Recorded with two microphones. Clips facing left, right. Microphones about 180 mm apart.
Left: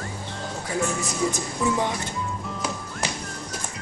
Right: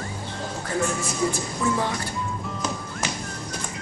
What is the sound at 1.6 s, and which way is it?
Speech, 20° left (ahead or behind).